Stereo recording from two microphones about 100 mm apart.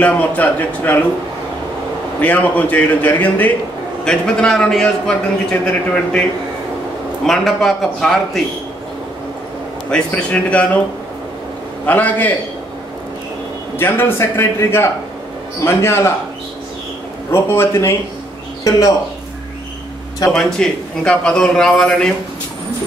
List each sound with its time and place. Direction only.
0.0 s a man's voice: 15° left (ahead or behind)
2.2 s a man's voice: 15° left (ahead or behind)
7.2 s a man's voice: centre (ahead or behind)
9.8 s a man's voice: 10° left (ahead or behind)
11.8 s a man's voice: 15° left (ahead or behind)
13.7 s a man's voice: 20° left (ahead or behind)
17.3 s a man's voice: 25° left (ahead or behind)
18.6 s speech: 40° left (ahead or behind)
20.2 s a man's voice: 5° left (ahead or behind)